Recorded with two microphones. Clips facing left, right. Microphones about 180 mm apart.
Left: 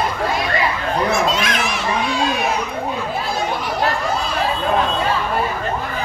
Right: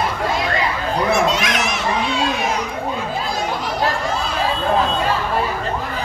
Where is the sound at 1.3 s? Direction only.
75° right (ahead or behind).